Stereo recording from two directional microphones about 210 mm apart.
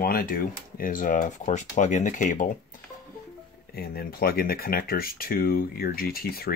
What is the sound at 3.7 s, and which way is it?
Speech, 45° left (ahead or behind).